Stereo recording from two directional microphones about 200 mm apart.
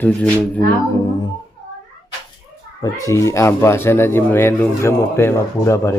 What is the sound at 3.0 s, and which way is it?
Speech, 15° left (ahead or behind).